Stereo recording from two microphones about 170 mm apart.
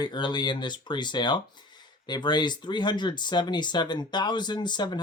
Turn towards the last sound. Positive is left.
turn(degrees=25)  # may be behind; listen again after turning